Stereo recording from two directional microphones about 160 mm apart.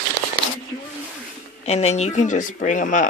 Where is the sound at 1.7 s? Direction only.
40° left (ahead or behind).